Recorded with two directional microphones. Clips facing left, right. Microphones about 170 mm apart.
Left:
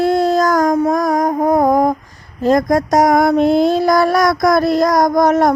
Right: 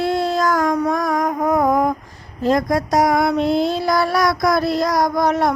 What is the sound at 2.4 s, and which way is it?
Child singing, 45° left (ahead or behind).